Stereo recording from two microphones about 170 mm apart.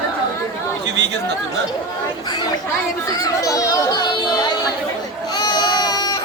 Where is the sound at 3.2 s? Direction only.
20° left (ahead or behind).